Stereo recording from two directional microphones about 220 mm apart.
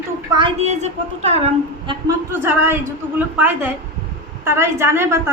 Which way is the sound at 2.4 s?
10° right (ahead or behind).